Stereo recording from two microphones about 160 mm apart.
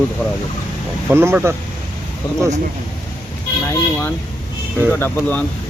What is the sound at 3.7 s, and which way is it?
Vehicle, 10° left (ahead or behind).